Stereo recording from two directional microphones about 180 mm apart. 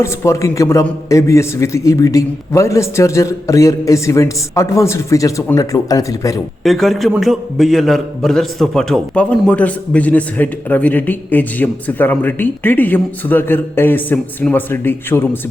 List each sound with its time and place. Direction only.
0.0 s a man's voice: 15° left (ahead or behind)
6.6 s a man's voice: centre (ahead or behind)